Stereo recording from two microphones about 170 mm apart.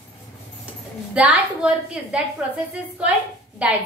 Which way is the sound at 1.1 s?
10° right (ahead or behind).